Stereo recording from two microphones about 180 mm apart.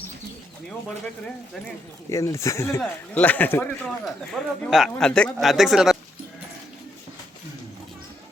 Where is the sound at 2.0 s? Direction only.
15° left (ahead or behind); by 6.0 s centre (ahead or behind).